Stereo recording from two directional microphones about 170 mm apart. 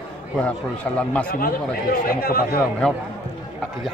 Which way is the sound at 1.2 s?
60° left (ahead or behind).